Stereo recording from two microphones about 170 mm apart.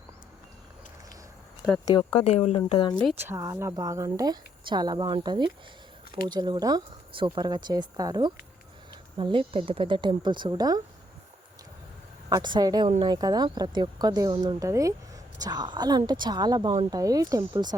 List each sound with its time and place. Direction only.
1.8 s speech: 20° left (ahead or behind)
2.1 s speech: 35° left (ahead or behind)
3.2 s speech: 15° right (ahead or behind)
12.3 s speech: 25° right (ahead or behind)